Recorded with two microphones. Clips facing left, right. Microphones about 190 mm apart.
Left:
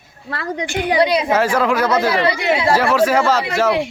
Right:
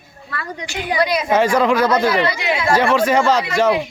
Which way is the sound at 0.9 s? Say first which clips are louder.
Left 3 dB; 30° left (ahead or behind).